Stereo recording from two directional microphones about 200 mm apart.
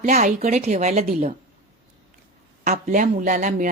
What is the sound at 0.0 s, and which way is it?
Speech, 40° right (ahead or behind).